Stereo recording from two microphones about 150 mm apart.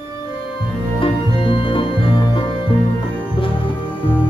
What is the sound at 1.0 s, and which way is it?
Music, 35° left (ahead or behind).